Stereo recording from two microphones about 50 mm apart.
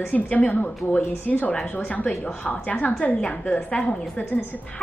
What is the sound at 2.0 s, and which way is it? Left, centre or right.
A woman's voice, left.